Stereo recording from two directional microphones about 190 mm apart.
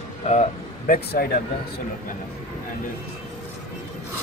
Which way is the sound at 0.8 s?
50° left (ahead or behind).